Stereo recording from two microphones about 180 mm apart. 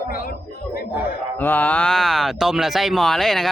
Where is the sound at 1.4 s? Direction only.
10° left (ahead or behind).